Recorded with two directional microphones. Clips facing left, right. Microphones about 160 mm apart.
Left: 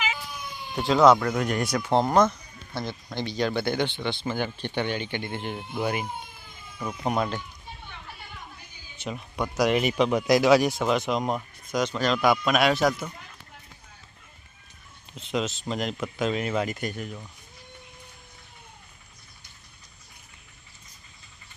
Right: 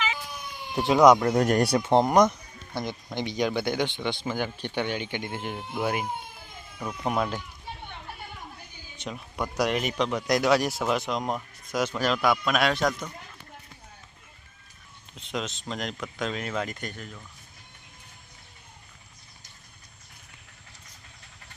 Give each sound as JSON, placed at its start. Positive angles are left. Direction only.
{"t": 0.8, "sound": "speech", "side_deg": -15}
{"t": 1.3, "sound": "speech", "side_deg": -40}
{"t": 1.9, "sound": "speech", "side_deg": -15}
{"t": 9.0, "sound": "speech", "side_deg": 0}
{"t": 15.1, "sound": "speech", "side_deg": 0}